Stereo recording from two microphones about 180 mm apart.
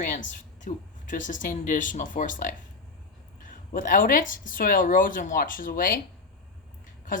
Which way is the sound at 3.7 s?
50° left (ahead or behind).